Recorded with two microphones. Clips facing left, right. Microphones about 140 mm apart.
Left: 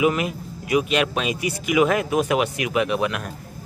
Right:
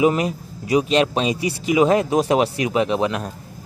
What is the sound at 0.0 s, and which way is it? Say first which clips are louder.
A man's voice: right 3 dB; 35° right (ahead or behind).